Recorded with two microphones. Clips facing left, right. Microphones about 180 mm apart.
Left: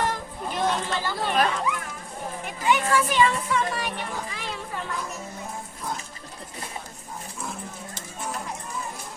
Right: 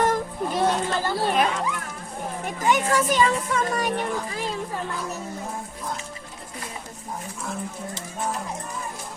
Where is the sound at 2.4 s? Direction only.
45° right (ahead or behind).